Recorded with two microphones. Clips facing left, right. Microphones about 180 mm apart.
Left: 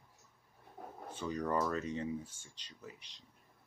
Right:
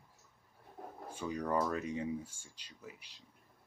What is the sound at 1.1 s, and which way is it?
Speech, 10° right (ahead or behind).